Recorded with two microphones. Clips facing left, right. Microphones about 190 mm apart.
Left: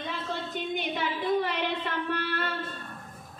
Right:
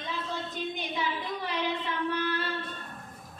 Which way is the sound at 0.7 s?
60° left (ahead or behind).